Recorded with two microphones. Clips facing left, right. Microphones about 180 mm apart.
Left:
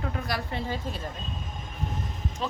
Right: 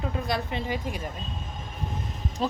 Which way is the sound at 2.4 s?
35° right (ahead or behind).